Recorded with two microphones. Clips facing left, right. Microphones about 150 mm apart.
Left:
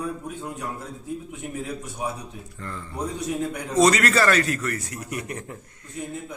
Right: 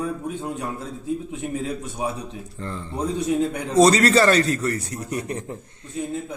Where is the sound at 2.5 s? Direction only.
30° right (ahead or behind).